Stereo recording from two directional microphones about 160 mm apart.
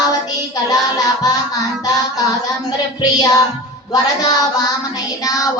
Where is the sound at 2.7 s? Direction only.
25° left (ahead or behind).